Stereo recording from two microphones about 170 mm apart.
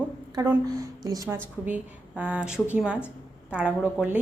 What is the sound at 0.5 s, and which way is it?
Speech, 20° right (ahead or behind).